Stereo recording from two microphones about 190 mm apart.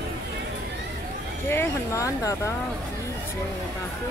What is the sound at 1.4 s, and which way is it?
Speech, 15° left (ahead or behind).